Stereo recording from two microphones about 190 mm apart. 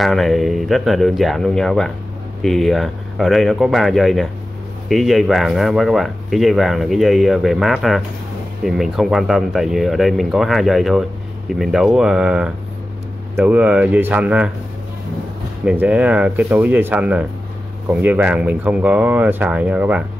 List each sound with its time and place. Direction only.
0.0 s speech: centre (ahead or behind)
15.6 s speech: 5° right (ahead or behind)